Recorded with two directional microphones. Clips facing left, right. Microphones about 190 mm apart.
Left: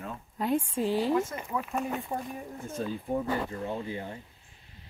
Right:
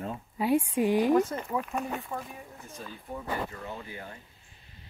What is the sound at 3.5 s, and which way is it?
Speech, 25° left (ahead or behind).